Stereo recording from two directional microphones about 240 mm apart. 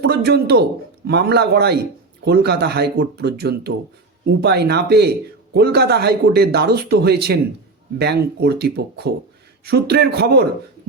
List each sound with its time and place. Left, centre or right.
0.0 s a man's voice: right